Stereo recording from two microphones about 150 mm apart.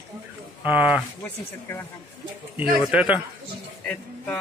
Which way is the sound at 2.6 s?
10° right (ahead or behind).